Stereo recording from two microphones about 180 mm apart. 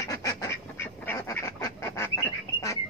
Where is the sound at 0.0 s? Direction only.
20° left (ahead or behind).